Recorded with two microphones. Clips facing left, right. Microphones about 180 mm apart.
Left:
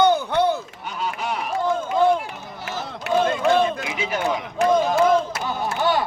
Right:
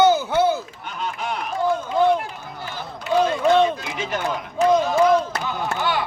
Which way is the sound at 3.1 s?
70° left (ahead or behind).